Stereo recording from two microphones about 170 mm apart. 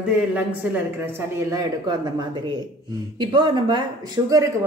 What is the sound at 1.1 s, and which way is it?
Speech, 20° right (ahead or behind).